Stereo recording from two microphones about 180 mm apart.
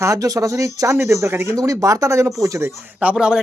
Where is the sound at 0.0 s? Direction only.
20° right (ahead or behind).